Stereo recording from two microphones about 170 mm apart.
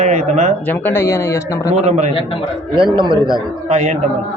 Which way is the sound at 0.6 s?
10° left (ahead or behind).